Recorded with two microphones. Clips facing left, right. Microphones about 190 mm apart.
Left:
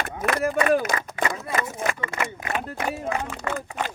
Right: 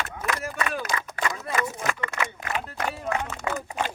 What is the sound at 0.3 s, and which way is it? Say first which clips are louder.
Speech: left 9 dB; 55° left (ahead or behind).